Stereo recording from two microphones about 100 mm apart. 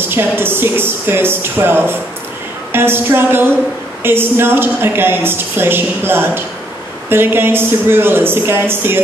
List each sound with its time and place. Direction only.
0.1 s a woman's voice: 20° right (ahead or behind)